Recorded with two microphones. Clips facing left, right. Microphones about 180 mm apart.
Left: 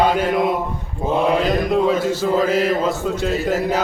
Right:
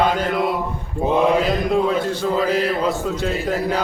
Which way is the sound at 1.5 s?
Centre (ahead or behind).